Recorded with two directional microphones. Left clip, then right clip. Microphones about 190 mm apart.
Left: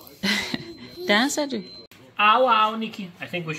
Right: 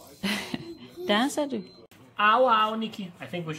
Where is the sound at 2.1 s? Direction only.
20° right (ahead or behind).